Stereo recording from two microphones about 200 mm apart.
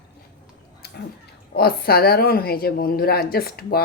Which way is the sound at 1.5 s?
50° left (ahead or behind).